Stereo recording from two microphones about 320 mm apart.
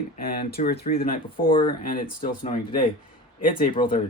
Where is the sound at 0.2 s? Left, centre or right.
Left.